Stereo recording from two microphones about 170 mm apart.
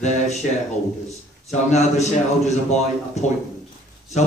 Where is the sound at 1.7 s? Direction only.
40° left (ahead or behind).